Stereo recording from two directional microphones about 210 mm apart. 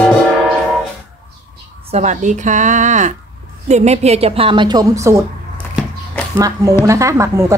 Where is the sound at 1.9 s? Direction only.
35° right (ahead or behind); by 5.2 s 15° right (ahead or behind).